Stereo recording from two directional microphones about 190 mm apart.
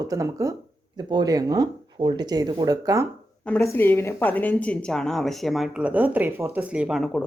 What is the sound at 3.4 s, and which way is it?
A woman's voice, 5° left (ahead or behind).